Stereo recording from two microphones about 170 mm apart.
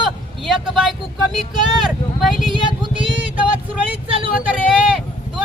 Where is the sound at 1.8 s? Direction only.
Centre (ahead or behind).